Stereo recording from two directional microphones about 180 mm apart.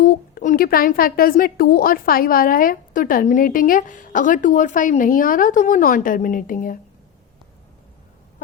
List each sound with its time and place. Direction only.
0.0 s a woman's voice: 50° left (ahead or behind)